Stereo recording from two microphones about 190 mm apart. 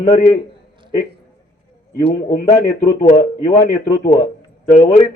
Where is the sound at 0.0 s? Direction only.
35° left (ahead or behind).